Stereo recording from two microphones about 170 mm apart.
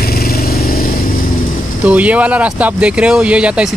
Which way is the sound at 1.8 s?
10° right (ahead or behind).